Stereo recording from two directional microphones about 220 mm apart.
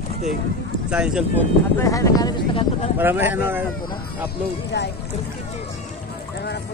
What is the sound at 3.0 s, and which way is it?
Speech, 10° right (ahead or behind).